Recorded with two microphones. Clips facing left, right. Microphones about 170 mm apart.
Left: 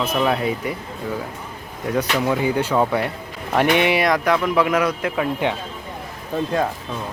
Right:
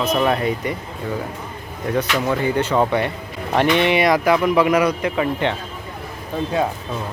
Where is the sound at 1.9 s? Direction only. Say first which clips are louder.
Even; 5° left (ahead or behind).